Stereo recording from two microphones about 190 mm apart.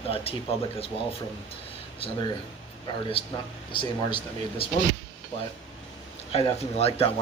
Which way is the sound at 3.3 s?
25° left (ahead or behind).